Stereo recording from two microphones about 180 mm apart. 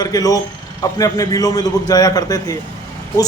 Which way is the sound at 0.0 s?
20° left (ahead or behind).